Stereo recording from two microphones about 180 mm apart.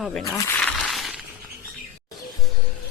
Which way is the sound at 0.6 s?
5° left (ahead or behind).